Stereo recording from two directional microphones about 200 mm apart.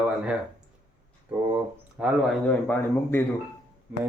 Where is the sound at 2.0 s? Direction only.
Centre (ahead or behind).